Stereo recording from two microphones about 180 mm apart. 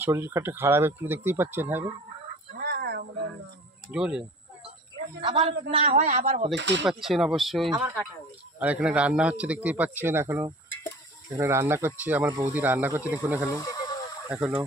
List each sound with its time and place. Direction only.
0.0 s speech: 15° right (ahead or behind)
2.6 s a sound: 65° right (ahead or behind)
3.9 s speech: 5° right (ahead or behind)
5.2 s a man's voice: 30° right (ahead or behind)
6.5 s speech: 80° right
6.9 s speech: centre (ahead or behind)
12.3 s a man's voice: 20° right (ahead or behind)
12.5 s speech: 10° right (ahead or behind)
13.5 s speech: 15° left (ahead or behind)
14.3 s speech: 10° right (ahead or behind)